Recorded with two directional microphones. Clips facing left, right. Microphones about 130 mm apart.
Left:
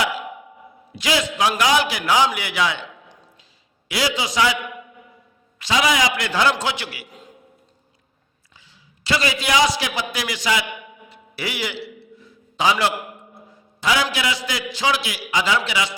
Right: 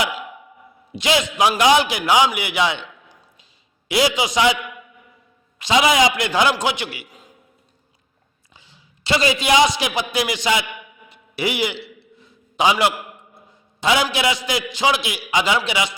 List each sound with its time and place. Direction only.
0.9 s a man's voice: 20° right (ahead or behind)
3.8 s a man's voice: 20° right (ahead or behind)
5.5 s a man's voice: 20° right (ahead or behind)
8.7 s a man's voice: 25° right (ahead or behind)
11.1 s a sound: 20° right (ahead or behind)
13.5 s a man's voice: 20° right (ahead or behind)